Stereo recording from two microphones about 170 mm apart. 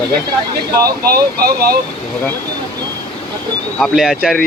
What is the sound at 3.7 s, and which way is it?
Speech, centre (ahead or behind).